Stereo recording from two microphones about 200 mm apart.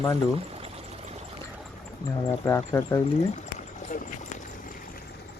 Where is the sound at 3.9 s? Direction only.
40° left (ahead or behind).